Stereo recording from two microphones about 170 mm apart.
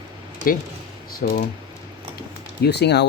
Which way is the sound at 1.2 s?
60° left (ahead or behind).